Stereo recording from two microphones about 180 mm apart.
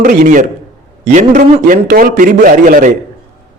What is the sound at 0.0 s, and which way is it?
Speech, 45° right (ahead or behind).